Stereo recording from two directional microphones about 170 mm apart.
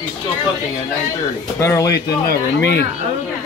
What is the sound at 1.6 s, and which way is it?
Speech, 15° left (ahead or behind).